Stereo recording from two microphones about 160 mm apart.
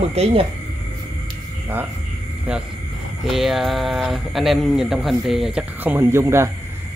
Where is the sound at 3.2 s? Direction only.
Centre (ahead or behind).